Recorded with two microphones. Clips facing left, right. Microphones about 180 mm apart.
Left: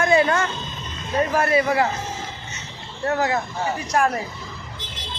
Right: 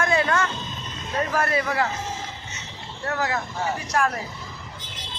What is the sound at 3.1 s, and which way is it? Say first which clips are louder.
Speech: left 4 dB; 25° left (ahead or behind).